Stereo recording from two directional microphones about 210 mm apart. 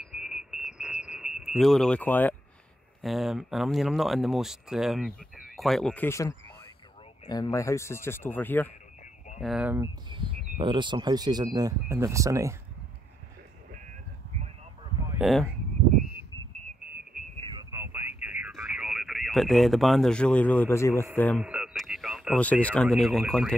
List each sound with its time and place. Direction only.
0.1 s a sound: centre (ahead or behind)
3.0 s speech: centre (ahead or behind)
9.4 s speech: 5° right (ahead or behind)
10.0 s speech: 25° right (ahead or behind)
15.1 s speech: centre (ahead or behind)
17.5 s a sound: 15° right (ahead or behind)
18.2 s radio: 5° right (ahead or behind); by 21.0 s 10° left (ahead or behind)
21.2 s speech: 5° left (ahead or behind)